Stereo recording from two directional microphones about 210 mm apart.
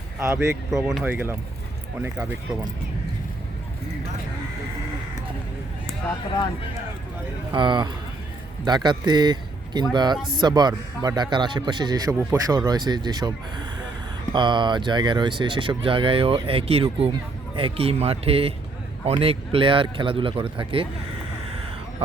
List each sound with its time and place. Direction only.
0.2 s speech: 15° right (ahead or behind)
0.7 s speech: centre (ahead or behind)
7.5 s speech: 20° right (ahead or behind)